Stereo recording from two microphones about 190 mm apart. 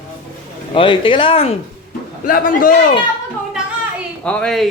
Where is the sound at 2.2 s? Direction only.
45° left (ahead or behind).